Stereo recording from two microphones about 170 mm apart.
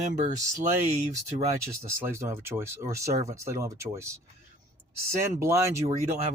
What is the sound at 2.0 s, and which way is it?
Speech, 15° right (ahead or behind).